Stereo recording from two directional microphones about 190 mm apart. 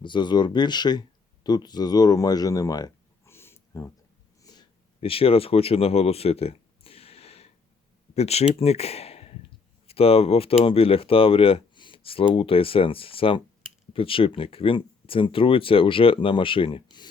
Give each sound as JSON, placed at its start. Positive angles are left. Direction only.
{"t": 0.0, "sound": "speech", "side_deg": 25}
{"t": 4.4, "sound": "a sound", "side_deg": 25}
{"t": 8.1, "sound": "speech", "side_deg": 35}